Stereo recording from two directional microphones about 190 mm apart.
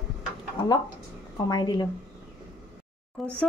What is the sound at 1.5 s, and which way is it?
Speech, 20° left (ahead or behind).